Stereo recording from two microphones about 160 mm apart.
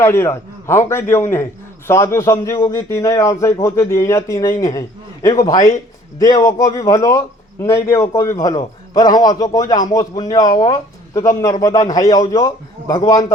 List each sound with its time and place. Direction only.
0.0 s a man's voice: 15° left (ahead or behind)